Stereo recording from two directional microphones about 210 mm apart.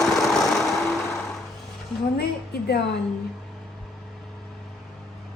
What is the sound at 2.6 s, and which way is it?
Cutlery, 50° left (ahead or behind).